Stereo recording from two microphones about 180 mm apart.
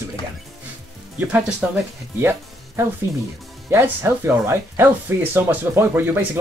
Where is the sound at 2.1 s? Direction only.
15° right (ahead or behind).